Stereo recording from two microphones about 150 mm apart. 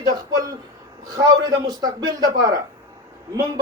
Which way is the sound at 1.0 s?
25° right (ahead or behind).